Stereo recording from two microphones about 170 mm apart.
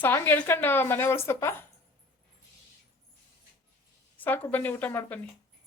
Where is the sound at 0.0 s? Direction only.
10° left (ahead or behind).